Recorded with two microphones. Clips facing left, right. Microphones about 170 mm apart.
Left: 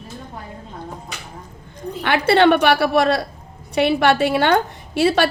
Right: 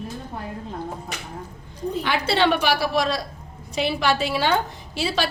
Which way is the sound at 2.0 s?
60° left (ahead or behind).